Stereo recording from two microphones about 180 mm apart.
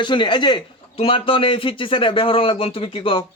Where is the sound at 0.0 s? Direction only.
25° left (ahead or behind).